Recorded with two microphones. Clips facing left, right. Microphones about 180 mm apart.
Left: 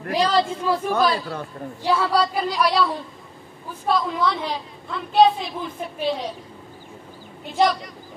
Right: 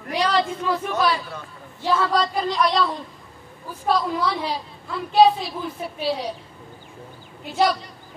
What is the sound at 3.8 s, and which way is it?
A woman's voice, 10° right (ahead or behind).